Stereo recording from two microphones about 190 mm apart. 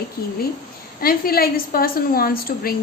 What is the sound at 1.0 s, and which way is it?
A woman's voice, 50° left (ahead or behind).